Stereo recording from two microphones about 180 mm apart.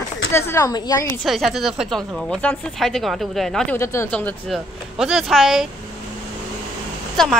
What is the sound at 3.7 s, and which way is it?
A woman's voice, 15° left (ahead or behind).